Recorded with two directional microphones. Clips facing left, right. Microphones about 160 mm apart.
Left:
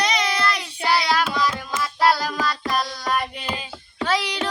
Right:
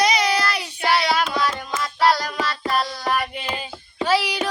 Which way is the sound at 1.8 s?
5° left (ahead or behind).